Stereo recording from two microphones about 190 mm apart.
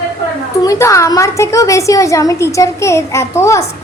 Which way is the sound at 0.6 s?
15° left (ahead or behind).